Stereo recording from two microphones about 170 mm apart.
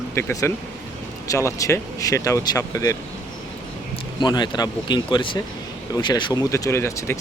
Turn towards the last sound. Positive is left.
turn(degrees=15)  # may be behind; listen again after turning